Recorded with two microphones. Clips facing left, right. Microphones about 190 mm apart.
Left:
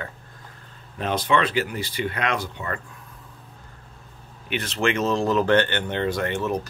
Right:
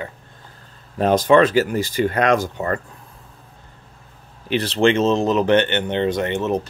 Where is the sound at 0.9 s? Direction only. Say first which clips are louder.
Right 9 dB; 40° right (ahead or behind).